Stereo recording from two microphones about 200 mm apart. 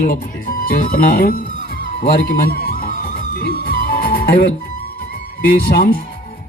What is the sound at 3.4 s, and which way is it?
Music, 50° left (ahead or behind).